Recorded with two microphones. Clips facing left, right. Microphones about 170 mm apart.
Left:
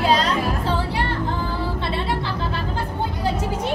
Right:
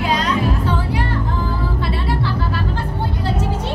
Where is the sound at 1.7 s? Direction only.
25° left (ahead or behind).